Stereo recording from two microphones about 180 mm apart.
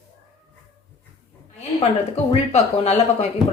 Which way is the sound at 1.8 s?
35° left (ahead or behind).